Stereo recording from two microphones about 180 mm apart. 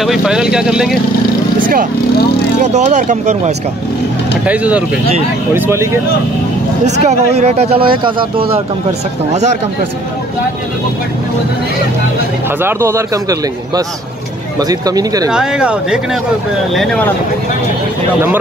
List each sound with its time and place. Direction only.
0.0 s speech: centre (ahead or behind)
1.6 s vehicle: 50° right (ahead or behind)
2.6 s speech: 40° right (ahead or behind)
4.5 s a man's voice: 5° right (ahead or behind)
7.1 s speech: 35° right (ahead or behind)
12.6 s a man's voice: 15° right (ahead or behind)
15.3 s speech: 5° right (ahead or behind)